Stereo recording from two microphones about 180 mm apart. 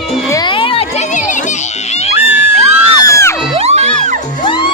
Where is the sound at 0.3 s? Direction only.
20° left (ahead or behind); by 1.4 s 40° left (ahead or behind).